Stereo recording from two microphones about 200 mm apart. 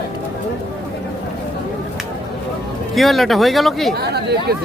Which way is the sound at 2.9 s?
Centre (ahead or behind).